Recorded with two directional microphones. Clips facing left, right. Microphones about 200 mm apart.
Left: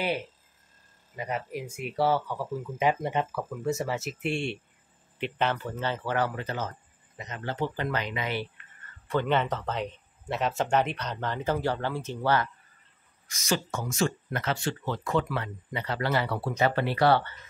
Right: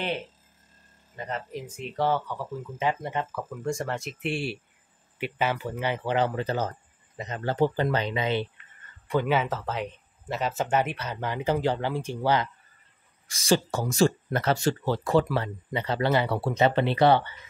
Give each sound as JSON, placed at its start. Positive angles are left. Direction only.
{"t": 1.1, "sound": "speech", "side_deg": 10}
{"t": 9.0, "sound": "speech", "side_deg": -10}
{"t": 13.3, "sound": "speech", "side_deg": -30}